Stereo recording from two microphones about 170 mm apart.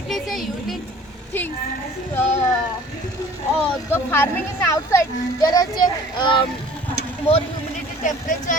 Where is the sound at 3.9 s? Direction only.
15° left (ahead or behind).